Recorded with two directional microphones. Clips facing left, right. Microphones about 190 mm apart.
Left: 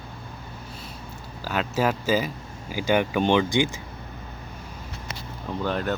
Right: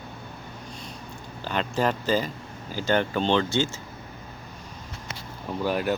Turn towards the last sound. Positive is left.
turn(degrees=-10)  # may be behind; listen again after turning